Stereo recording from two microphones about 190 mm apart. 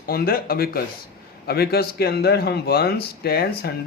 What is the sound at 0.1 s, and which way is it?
Speech, 50° left (ahead or behind).